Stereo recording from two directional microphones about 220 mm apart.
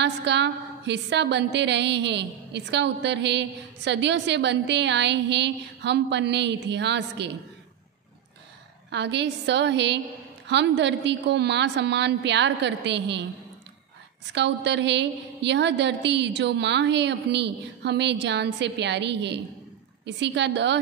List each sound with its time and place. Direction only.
0.0 s a woman's voice: 50° right (ahead or behind)
8.9 s a woman's voice: 50° right (ahead or behind)
14.3 s a woman's voice: 50° right (ahead or behind)